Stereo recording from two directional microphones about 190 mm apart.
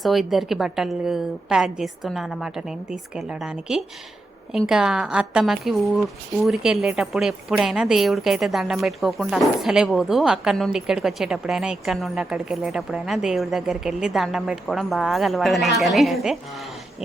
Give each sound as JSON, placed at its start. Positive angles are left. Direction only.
{"t": 0.0, "sound": "speech", "side_deg": 0}